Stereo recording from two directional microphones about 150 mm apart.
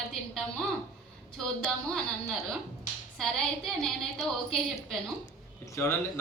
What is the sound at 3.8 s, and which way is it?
A woman's voice, centre (ahead or behind).